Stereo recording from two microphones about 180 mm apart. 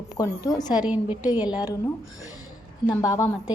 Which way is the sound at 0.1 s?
20° left (ahead or behind).